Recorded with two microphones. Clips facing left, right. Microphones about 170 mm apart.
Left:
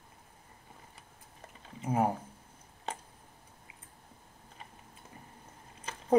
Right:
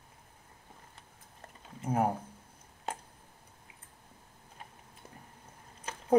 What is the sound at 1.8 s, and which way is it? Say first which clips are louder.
Speech: even; centre (ahead or behind).